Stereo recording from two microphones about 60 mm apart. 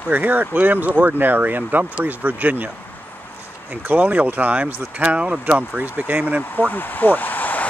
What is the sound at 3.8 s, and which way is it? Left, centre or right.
Speech, right.